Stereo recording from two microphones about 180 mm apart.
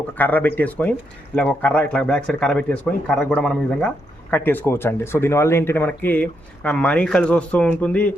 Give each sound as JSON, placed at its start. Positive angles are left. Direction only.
{"t": 0.2, "sound": "speech", "side_deg": 10}